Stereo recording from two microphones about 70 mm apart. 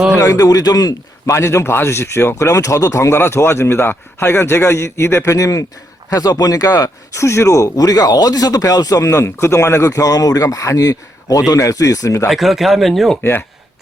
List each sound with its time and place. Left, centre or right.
0.2 s speech: left
1.3 s speech: left
3.2 s a man's voice: left
9.0 s speech: left
12.3 s speech: centre